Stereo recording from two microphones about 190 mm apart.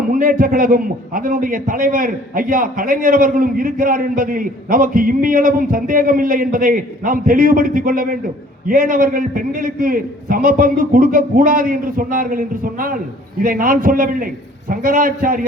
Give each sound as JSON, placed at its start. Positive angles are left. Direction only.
{"t": 0.1, "sound": "a man's voice", "side_deg": -45}